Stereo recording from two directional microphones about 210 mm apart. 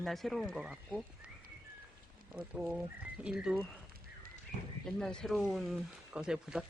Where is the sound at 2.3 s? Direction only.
5° right (ahead or behind).